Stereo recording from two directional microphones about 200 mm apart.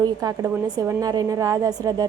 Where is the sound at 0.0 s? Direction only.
20° right (ahead or behind).